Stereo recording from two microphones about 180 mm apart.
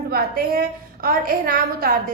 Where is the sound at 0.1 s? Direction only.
55° right (ahead or behind).